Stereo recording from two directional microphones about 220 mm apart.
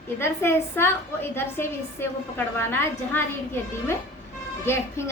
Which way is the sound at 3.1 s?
10° left (ahead or behind).